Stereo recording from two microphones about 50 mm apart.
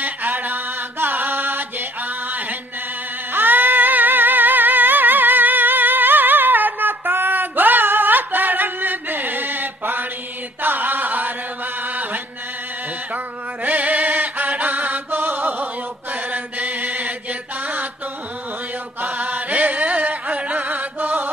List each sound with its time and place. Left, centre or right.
0.0 s mantra: right
3.3 s a sound: right
10.6 s chant: right
13.7 s chant: right
19.1 s music: right